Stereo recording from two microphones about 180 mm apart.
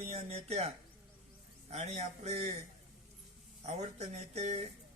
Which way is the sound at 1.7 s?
35° right (ahead or behind).